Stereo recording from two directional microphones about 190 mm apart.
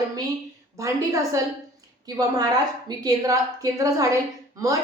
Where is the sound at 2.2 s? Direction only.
20° right (ahead or behind).